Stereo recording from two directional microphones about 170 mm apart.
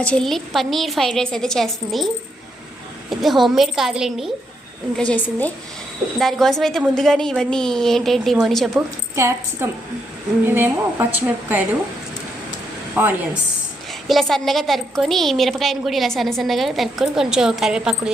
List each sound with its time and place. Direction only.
0.0 s a woman's voice: 5° left (ahead or behind)
3.1 s a woman's voice: centre (ahead or behind)
4.9 s a woman's voice: 10° left (ahead or behind)
9.1 s a woman's voice: 15° right (ahead or behind)
13.0 s a woman's voice: 10° right (ahead or behind)
14.1 s a woman's voice: centre (ahead or behind)